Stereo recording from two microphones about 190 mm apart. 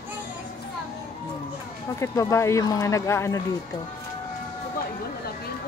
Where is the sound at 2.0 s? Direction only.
15° left (ahead or behind).